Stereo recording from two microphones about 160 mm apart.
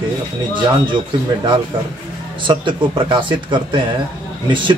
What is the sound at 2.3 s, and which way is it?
Speech, 30° right (ahead or behind).